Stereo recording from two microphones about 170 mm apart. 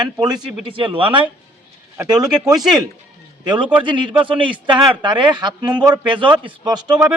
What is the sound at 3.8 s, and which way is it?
A man's voice, 30° right (ahead or behind).